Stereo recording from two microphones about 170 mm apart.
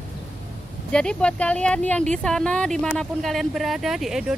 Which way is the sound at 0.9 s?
5° left (ahead or behind).